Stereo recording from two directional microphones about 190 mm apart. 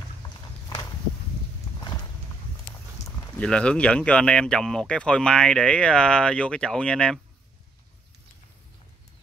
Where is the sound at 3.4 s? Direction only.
5° left (ahead or behind).